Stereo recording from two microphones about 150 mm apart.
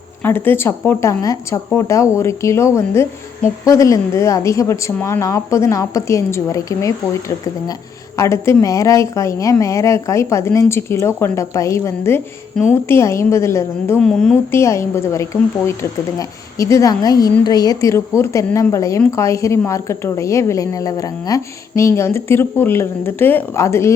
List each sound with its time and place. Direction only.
0.2 s a woman's voice: 15° left (ahead or behind)
12.6 s a woman's voice: 5° left (ahead or behind)
12.9 s a woman's voice: 20° left (ahead or behind)
14.0 s a woman's voice: 5° left (ahead or behind)
14.5 s a woman's voice: 20° left (ahead or behind)